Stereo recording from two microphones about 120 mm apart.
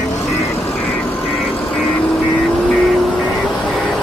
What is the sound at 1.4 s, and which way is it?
Vehicle, centre (ahead or behind).